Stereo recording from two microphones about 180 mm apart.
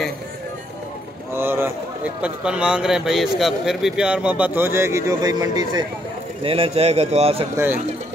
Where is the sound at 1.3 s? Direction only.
10° right (ahead or behind); by 7.4 s 35° right (ahead or behind).